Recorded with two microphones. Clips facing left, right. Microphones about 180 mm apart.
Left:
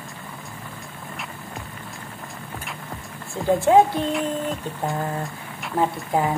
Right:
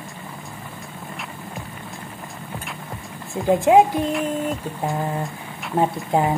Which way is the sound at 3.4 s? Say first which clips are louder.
Right 1 dB; 15° right (ahead or behind).